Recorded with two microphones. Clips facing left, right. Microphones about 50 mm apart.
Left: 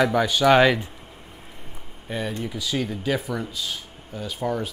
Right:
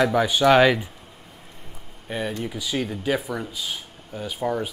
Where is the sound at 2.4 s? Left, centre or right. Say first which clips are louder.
Even; centre.